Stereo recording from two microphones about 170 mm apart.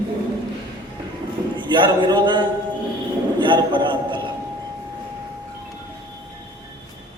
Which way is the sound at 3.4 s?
30° right (ahead or behind).